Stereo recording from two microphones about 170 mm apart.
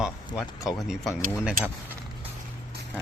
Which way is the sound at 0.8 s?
Centre (ahead or behind).